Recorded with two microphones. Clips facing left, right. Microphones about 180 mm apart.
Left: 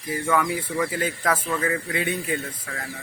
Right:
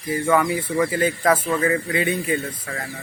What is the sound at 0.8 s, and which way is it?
Speech, 5° right (ahead or behind).